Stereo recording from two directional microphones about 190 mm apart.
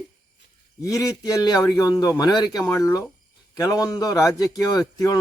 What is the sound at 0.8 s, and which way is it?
Speech, 15° left (ahead or behind).